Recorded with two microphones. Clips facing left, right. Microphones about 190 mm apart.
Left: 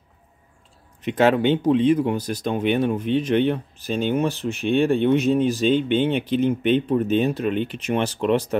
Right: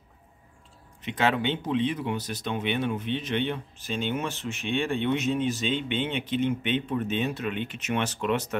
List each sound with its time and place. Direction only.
1.0 s speech: 45° left (ahead or behind)